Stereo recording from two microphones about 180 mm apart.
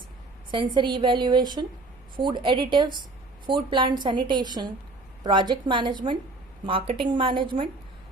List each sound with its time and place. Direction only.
0.5 s a woman's voice: 25° right (ahead or behind)